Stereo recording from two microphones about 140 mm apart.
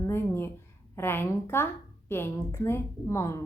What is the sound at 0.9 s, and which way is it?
A woman's voice, 15° left (ahead or behind).